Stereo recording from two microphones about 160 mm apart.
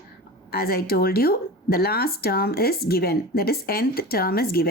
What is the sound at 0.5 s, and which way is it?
Speech, 70° left (ahead or behind).